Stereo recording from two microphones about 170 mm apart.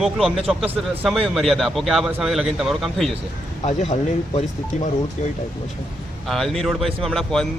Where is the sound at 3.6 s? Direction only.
35° left (ahead or behind).